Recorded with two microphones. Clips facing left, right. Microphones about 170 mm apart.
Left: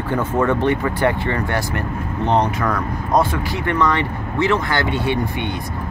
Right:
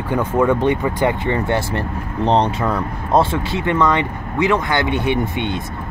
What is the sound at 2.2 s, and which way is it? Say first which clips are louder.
Speech: right 2 dB; 30° right (ahead or behind).